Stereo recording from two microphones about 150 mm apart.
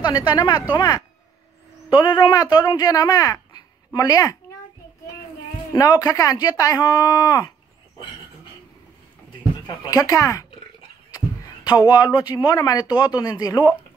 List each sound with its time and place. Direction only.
0.0 s speech: 30° left (ahead or behind)
5.7 s speech: 25° left (ahead or behind)
9.8 s speech: 25° left (ahead or behind)
11.1 s a sound: 25° left (ahead or behind)
11.9 s speech: 25° left (ahead or behind)